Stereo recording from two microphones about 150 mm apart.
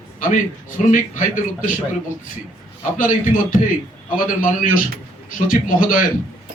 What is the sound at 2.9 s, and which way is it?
A man's voice, 60° left (ahead or behind).